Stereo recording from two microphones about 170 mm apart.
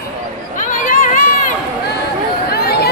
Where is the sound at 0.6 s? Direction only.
50° left (ahead or behind).